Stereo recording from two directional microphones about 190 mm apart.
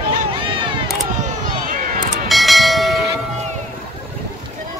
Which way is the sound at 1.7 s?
45° right (ahead or behind).